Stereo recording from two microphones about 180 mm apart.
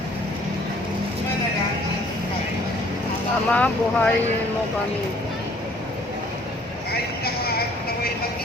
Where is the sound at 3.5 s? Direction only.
5° left (ahead or behind).